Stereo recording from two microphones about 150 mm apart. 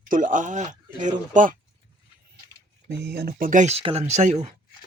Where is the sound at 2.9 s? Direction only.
90° right.